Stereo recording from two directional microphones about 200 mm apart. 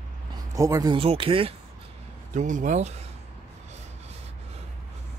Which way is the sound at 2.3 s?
40° right (ahead or behind).